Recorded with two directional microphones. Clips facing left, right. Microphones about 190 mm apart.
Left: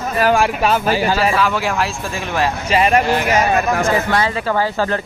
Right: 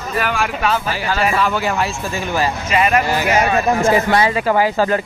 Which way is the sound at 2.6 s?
30° left (ahead or behind).